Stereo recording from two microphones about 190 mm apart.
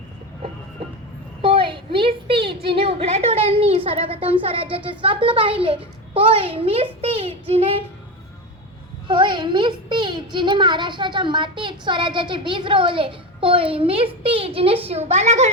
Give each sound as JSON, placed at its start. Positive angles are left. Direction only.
{"t": 1.4, "sound": "a woman's voice", "side_deg": -25}
{"t": 7.0, "sound": "child singing", "side_deg": -30}
{"t": 9.0, "sound": "a woman's voice", "side_deg": -25}